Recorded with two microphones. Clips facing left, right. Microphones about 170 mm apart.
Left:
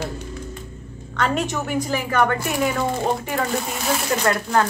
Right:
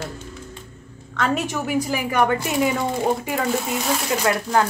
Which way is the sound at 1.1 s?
5° right (ahead or behind).